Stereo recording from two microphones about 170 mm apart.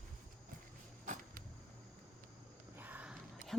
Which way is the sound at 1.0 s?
50° right (ahead or behind).